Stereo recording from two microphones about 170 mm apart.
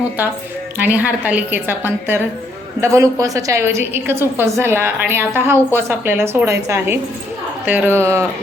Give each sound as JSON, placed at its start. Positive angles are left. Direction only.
{"t": 0.8, "sound": "a woman's voice", "side_deg": -10}